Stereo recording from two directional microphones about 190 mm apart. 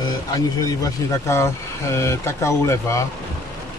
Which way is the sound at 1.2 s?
15° left (ahead or behind).